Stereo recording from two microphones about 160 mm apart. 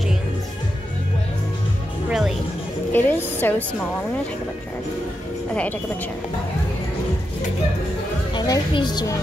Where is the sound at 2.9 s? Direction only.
10° left (ahead or behind).